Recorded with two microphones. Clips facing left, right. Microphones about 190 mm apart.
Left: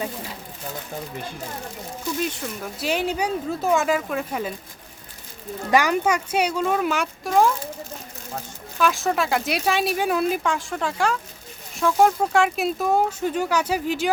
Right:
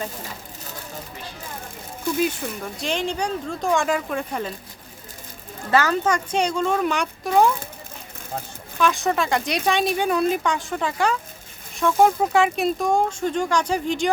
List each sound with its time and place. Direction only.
2.1 s speech: centre (ahead or behind)
5.7 s speech: 15° left (ahead or behind)
8.8 s speech: centre (ahead or behind)